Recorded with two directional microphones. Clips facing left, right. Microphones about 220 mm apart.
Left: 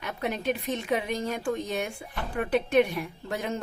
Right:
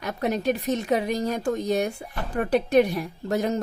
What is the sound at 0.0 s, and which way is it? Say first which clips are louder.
Speech: right 5 dB; 40° right (ahead or behind).